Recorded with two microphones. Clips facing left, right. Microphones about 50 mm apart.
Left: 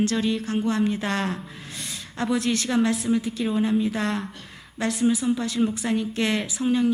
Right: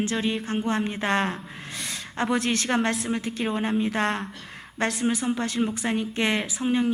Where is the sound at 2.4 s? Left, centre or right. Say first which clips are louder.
Left 1 dB; right.